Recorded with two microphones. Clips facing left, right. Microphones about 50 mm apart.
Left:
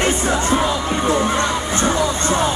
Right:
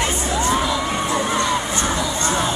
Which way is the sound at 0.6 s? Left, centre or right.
Left.